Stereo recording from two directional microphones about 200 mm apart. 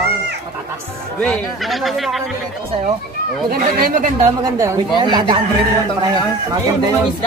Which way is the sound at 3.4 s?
45° right (ahead or behind).